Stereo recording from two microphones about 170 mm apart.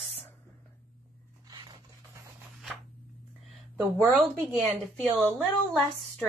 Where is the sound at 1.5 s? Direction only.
25° right (ahead or behind).